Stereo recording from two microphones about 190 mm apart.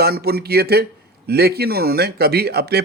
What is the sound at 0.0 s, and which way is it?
Speech, 55° right (ahead or behind).